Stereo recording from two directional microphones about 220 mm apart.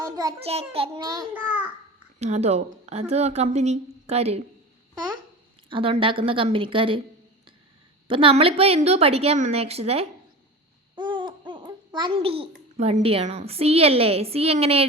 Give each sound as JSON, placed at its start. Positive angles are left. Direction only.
{"t": 0.0, "sound": "a woman's voice", "side_deg": -15}
{"t": 2.1, "sound": "a woman's voice", "side_deg": -30}
{"t": 5.6, "sound": "a woman's voice", "side_deg": -25}
{"t": 8.0, "sound": "a woman's voice", "side_deg": -25}